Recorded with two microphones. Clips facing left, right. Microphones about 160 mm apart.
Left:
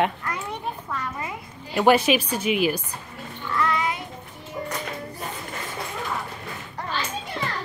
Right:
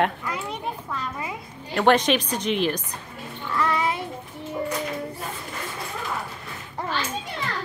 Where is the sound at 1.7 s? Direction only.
5° left (ahead or behind).